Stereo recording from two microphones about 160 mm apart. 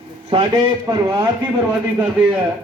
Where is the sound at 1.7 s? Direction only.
10° right (ahead or behind).